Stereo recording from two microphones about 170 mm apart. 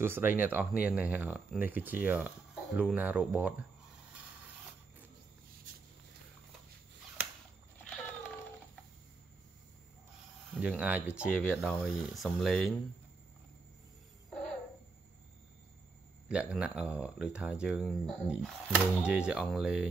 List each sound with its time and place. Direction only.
0.0 s speech: 15° right (ahead or behind)
10.5 s speech: 5° right (ahead or behind)
16.3 s speech: 5° right (ahead or behind)